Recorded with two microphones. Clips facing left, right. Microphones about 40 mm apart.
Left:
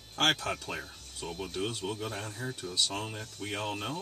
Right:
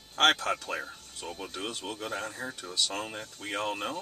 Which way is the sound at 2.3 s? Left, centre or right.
Right.